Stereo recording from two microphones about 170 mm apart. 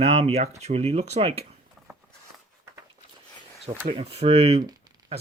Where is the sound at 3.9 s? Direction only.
35° right (ahead or behind).